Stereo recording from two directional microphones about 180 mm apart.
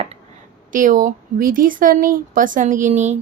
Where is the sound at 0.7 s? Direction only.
45° right (ahead or behind).